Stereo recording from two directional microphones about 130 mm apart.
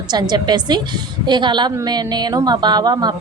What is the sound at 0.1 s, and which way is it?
A woman's voice, 30° right (ahead or behind).